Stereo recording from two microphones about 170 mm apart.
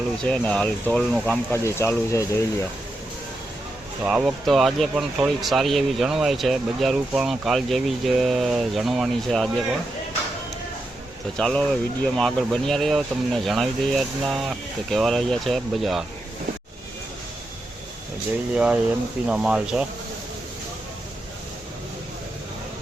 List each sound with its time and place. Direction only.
0.2 s speech: 5° left (ahead or behind)
1.6 s speech: 15° left (ahead or behind)
4.0 s speech: 5° right (ahead or behind)
11.3 s speech: 5° left (ahead or behind)
18.5 s speech: 5° right (ahead or behind)